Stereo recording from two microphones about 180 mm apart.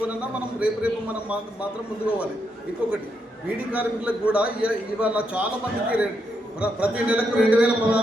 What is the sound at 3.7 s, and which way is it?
A man's voice, 5° right (ahead or behind).